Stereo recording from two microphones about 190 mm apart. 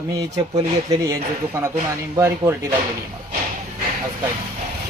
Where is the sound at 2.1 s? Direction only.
15° right (ahead or behind).